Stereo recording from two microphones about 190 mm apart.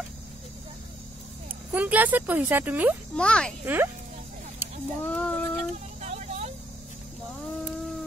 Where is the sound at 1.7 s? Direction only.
10° right (ahead or behind).